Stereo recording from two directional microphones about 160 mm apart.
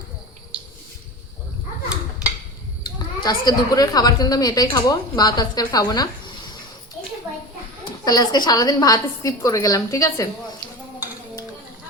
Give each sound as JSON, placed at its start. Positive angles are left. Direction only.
{"t": 2.8, "sound": "a woman's voice", "side_deg": 25}
{"t": 8.0, "sound": "a woman's voice", "side_deg": 25}